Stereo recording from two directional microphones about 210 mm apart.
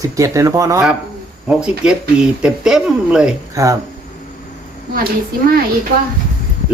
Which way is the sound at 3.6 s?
15° right (ahead or behind).